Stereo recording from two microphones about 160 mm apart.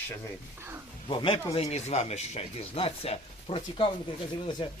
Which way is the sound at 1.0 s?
30° left (ahead or behind).